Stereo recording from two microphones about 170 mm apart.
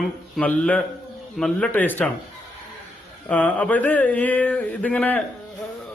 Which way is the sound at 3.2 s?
10° left (ahead or behind).